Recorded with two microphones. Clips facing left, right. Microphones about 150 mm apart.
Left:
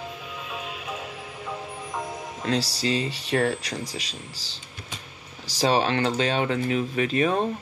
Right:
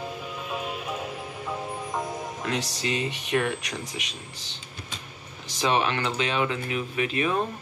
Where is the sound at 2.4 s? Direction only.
30° left (ahead or behind).